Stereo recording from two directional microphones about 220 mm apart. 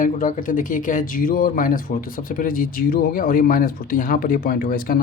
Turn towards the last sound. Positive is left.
turn(degrees=40)  # may be behind; listen again after turning